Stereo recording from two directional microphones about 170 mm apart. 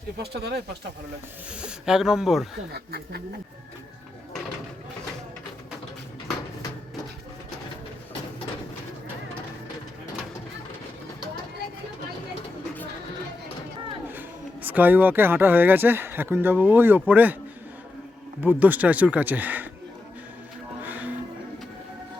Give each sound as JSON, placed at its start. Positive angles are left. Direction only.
{"t": 0.2, "sound": "speech", "side_deg": -70}
{"t": 1.5, "sound": "speech", "side_deg": -5}
{"t": 2.7, "sound": "speech", "side_deg": -70}
{"t": 14.1, "sound": "speech", "side_deg": -10}
{"t": 18.3, "sound": "speech", "side_deg": -10}
{"t": 20.8, "sound": "music", "side_deg": -10}